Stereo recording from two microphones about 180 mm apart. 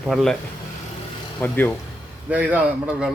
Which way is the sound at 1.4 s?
10° left (ahead or behind).